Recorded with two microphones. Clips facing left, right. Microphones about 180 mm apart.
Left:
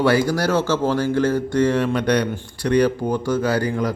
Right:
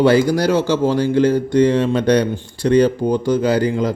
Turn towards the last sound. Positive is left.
turn(degrees=-20)  # may be behind; listen again after turning